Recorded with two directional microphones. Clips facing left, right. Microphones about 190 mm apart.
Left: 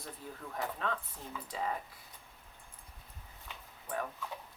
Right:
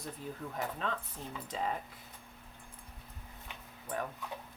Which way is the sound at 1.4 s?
20° right (ahead or behind).